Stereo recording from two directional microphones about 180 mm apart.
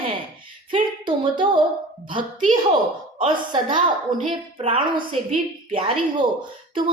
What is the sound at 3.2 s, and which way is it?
A woman's voice, 25° right (ahead or behind).